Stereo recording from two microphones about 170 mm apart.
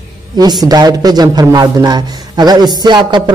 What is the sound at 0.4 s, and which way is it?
A man's voice, 25° right (ahead or behind).